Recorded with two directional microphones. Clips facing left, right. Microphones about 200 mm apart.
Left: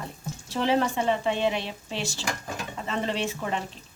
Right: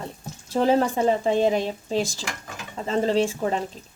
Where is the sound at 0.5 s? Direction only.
40° right (ahead or behind).